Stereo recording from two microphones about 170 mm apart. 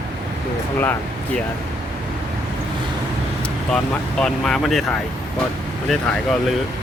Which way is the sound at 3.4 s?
5° left (ahead or behind).